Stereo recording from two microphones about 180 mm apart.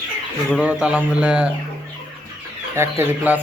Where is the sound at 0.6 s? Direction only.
5° right (ahead or behind).